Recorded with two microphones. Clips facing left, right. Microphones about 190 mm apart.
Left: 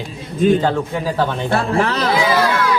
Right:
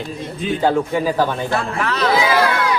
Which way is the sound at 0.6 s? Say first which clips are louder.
Right 2 dB; 10° right (ahead or behind).